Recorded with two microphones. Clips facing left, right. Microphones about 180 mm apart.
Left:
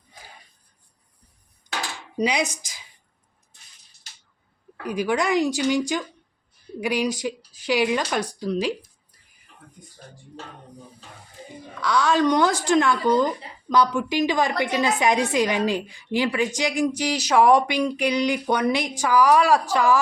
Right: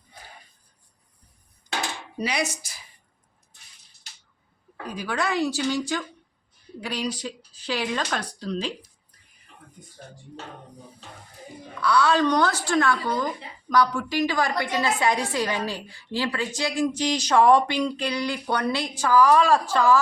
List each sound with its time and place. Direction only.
2.1 s speech: 15° left (ahead or behind)
2.6 s a woman's voice: 90° left
4.8 s speech: 15° left (ahead or behind)
11.9 s speech: 15° left (ahead or behind)